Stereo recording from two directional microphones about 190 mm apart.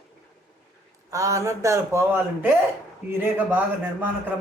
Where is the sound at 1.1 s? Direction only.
15° right (ahead or behind).